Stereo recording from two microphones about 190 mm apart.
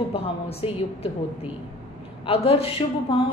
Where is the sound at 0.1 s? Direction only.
30° left (ahead or behind).